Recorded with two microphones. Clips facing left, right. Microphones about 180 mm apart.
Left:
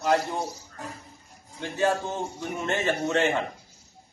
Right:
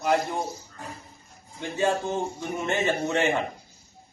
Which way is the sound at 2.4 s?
15° right (ahead or behind).